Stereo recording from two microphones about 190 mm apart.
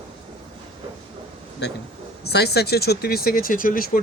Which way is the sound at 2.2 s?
60° left (ahead or behind).